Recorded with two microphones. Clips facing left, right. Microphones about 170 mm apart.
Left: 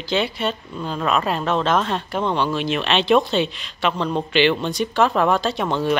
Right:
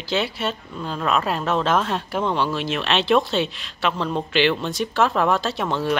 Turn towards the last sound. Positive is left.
turn(degrees=0)  # may be behind; listen again after turning